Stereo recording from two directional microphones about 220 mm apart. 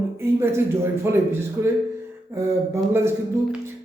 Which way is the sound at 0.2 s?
10° right (ahead or behind).